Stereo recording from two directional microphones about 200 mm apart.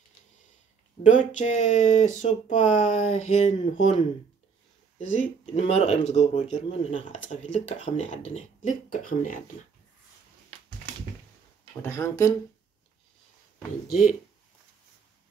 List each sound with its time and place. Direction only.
1.0 s speech: 40° left (ahead or behind)
5.5 s speech: 30° left (ahead or behind)
11.8 s speech: 15° left (ahead or behind)